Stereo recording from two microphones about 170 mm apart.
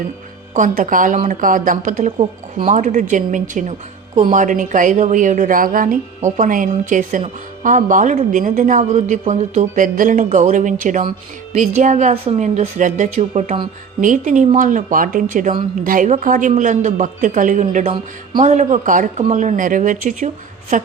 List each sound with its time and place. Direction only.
0.5 s a woman's voice: 45° right (ahead or behind)